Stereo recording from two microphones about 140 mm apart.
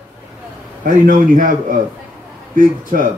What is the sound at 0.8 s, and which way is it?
Speech, 75° right (ahead or behind).